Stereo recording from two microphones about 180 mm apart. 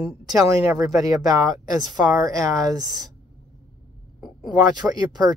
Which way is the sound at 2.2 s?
20° right (ahead or behind).